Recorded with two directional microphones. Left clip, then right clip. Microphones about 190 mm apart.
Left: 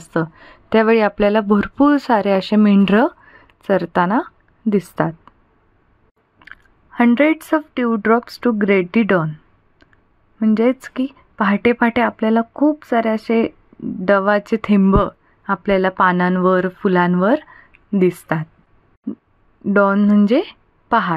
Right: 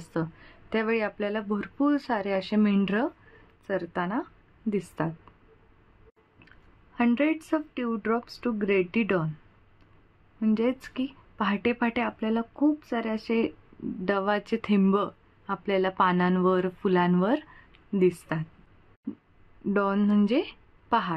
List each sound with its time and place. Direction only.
0.0 s a woman's voice: 40° left (ahead or behind)
6.4 s speech: 45° left (ahead or behind)
10.4 s speech: 40° left (ahead or behind)
19.7 s speech: 35° left (ahead or behind)